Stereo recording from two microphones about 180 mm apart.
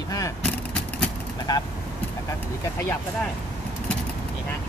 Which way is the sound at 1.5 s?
25° left (ahead or behind).